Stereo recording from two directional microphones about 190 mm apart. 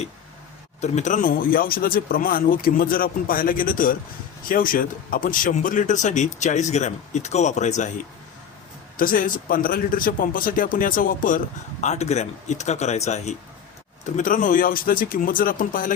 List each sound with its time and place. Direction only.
0.8 s speech: 40° left (ahead or behind)
9.0 s speech: 45° left (ahead or behind)